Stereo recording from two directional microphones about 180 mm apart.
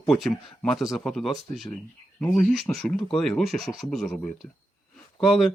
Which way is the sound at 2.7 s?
Centre (ahead or behind).